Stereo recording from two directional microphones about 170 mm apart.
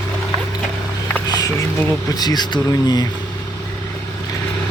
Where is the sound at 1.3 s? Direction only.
20° left (ahead or behind).